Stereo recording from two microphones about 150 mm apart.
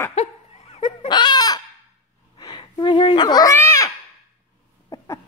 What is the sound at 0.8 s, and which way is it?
Chicken, 30° left (ahead or behind).